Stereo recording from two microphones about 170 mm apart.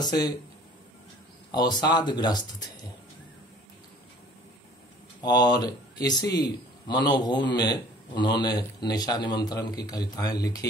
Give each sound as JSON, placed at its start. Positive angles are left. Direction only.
{"t": 0.0, "sound": "a man's voice", "side_deg": 25}
{"t": 1.5, "sound": "a man's voice", "side_deg": 25}
{"t": 5.2, "sound": "a man's voice", "side_deg": 25}